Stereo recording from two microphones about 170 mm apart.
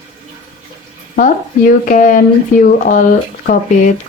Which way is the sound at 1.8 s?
50° left (ahead or behind).